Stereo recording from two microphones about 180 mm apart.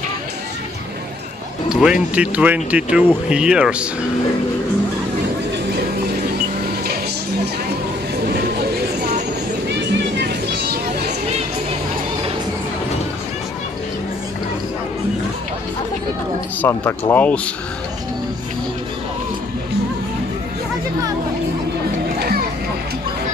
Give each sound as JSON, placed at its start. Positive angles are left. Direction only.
{"t": 1.7, "sound": "speech", "side_deg": -5}
{"t": 9.8, "sound": "music", "side_deg": -70}
{"t": 16.6, "sound": "speech", "side_deg": 10}
{"t": 22.2, "sound": "music", "side_deg": -60}